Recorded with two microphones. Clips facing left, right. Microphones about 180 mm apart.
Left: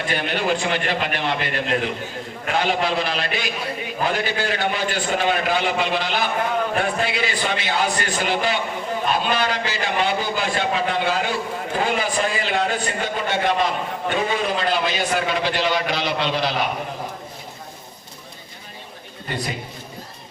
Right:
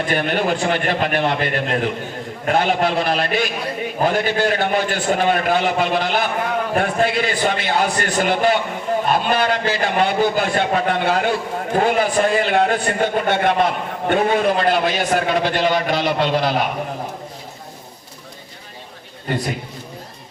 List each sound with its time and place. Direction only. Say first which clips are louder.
0.1 s a man's voice: right 2 dB; 50° right (ahead or behind)